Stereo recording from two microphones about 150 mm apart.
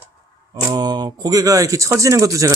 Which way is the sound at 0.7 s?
25° right (ahead or behind).